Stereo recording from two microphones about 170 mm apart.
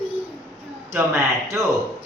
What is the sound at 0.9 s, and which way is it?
Speech, 15° right (ahead or behind).